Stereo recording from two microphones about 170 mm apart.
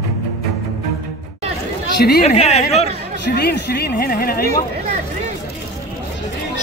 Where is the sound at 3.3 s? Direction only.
75° left (ahead or behind).